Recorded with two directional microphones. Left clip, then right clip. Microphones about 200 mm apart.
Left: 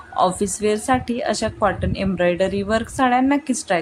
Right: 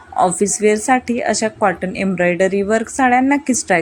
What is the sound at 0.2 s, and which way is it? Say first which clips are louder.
A woman's voice: right 4 dB; 10° right (ahead or behind).